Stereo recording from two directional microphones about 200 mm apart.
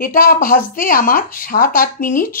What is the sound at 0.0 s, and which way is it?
Speech, 45° left (ahead or behind).